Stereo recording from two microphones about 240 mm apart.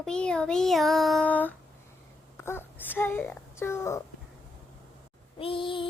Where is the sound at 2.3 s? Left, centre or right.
Centre.